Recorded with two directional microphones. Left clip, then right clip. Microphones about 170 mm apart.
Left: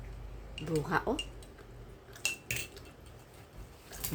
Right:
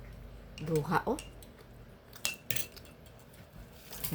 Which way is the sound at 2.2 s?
30° right (ahead or behind).